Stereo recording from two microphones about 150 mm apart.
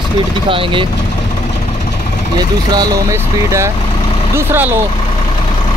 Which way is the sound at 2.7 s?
25° right (ahead or behind).